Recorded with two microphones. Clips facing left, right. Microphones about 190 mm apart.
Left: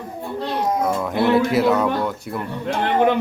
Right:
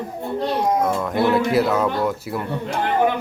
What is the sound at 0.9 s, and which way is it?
A child's voice, centre (ahead or behind).